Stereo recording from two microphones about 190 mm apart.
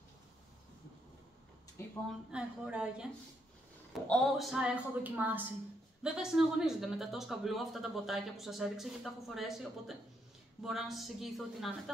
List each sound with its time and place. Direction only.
2.0 s speech: 5° right (ahead or behind)
4.1 s speech: centre (ahead or behind)